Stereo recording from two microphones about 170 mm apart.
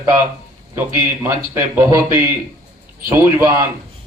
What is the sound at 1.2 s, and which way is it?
Speech, 15° right (ahead or behind).